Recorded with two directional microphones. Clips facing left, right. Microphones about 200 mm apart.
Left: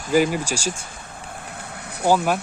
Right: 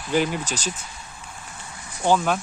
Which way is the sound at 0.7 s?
55° left (ahead or behind).